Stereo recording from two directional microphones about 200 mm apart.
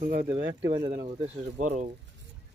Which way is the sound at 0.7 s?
25° right (ahead or behind).